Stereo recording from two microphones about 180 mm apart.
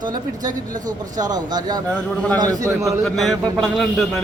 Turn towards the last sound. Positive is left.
turn(degrees=0)  # may be behind; listen again after turning